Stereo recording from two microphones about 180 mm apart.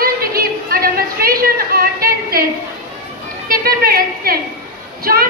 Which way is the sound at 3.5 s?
55° right (ahead or behind).